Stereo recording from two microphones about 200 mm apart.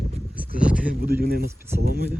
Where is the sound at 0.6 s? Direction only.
5° right (ahead or behind).